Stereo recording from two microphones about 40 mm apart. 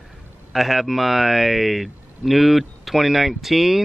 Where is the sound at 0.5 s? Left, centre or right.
Centre.